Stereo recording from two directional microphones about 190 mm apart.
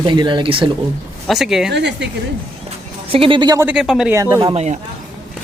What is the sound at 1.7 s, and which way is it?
Speech, 65° right (ahead or behind).